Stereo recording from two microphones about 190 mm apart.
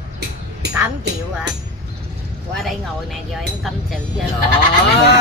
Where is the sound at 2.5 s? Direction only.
Centre (ahead or behind).